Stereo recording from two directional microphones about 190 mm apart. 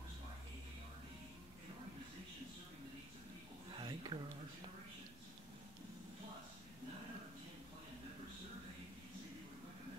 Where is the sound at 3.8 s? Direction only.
25° right (ahead or behind).